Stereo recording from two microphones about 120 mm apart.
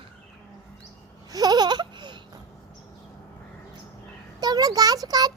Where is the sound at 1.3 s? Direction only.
35° right (ahead or behind).